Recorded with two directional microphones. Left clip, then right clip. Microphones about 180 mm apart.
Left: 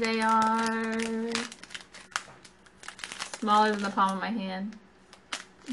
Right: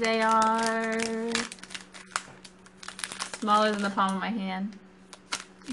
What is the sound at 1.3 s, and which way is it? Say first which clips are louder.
Crumpling: right 2 dB; 10° right (ahead or behind).